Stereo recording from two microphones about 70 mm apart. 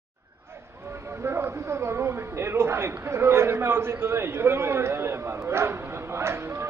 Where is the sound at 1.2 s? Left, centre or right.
Right.